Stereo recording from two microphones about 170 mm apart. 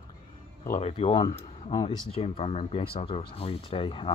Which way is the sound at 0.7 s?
35° left (ahead or behind).